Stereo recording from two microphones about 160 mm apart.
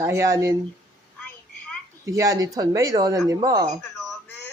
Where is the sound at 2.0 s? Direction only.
20° right (ahead or behind).